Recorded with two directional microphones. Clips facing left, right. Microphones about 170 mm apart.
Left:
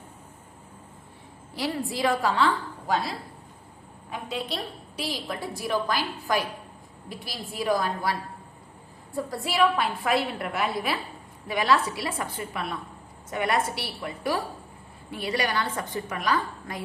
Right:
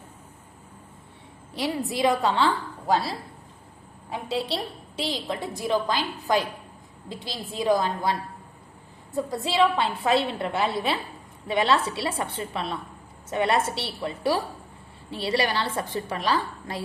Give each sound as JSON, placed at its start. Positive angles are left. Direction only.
{"t": 1.5, "sound": "a woman's voice", "side_deg": -20}
{"t": 4.1, "sound": "a woman's voice", "side_deg": -30}